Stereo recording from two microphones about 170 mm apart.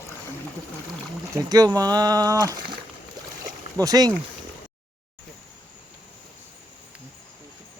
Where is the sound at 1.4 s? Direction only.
20° right (ahead or behind).